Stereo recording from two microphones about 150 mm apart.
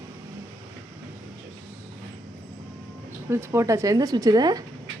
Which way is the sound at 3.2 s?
15° right (ahead or behind).